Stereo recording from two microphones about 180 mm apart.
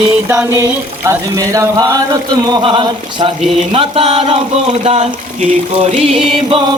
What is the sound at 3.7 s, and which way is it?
Music, 30° right (ahead or behind).